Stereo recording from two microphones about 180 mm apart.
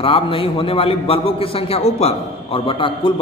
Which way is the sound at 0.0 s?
30° left (ahead or behind).